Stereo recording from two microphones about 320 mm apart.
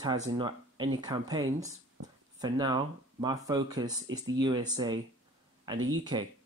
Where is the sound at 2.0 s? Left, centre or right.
Right.